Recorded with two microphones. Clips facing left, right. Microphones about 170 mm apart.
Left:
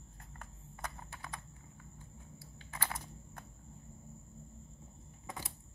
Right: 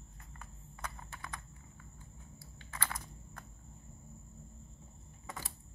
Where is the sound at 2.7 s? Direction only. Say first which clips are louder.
Left 1 dB; 15° left (ahead or behind).